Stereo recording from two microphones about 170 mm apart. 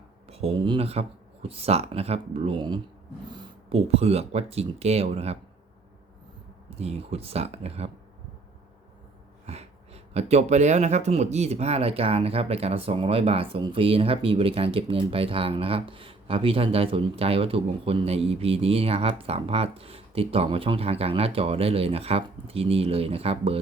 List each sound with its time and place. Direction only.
0.3 s speech: 35° right (ahead or behind)
6.7 s speech: 35° right (ahead or behind)
9.5 s speech: 40° right (ahead or behind)